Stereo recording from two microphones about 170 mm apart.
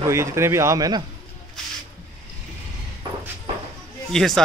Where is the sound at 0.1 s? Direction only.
15° right (ahead or behind).